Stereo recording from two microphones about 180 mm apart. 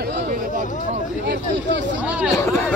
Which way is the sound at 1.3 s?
80° right.